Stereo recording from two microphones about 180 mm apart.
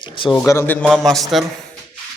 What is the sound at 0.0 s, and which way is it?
Speech, 25° left (ahead or behind).